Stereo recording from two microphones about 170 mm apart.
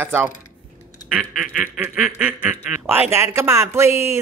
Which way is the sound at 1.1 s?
5° right (ahead or behind).